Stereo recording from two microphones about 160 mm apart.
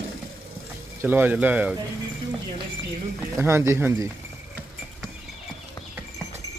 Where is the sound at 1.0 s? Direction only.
10° right (ahead or behind).